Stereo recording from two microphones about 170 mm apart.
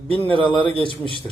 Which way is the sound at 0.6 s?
30° right (ahead or behind).